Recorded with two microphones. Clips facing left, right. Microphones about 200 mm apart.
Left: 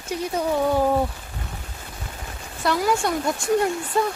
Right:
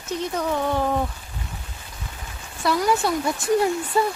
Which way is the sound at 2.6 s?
Centre (ahead or behind).